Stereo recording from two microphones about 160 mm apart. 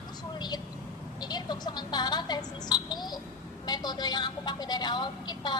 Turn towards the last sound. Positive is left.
turn(degrees=25)  # may be behind; listen again after turning